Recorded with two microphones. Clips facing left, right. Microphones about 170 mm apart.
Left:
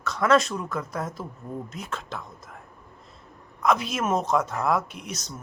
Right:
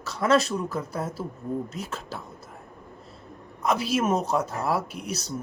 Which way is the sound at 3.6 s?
35° right (ahead or behind).